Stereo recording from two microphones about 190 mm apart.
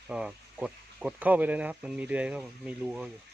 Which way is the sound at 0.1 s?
5° right (ahead or behind).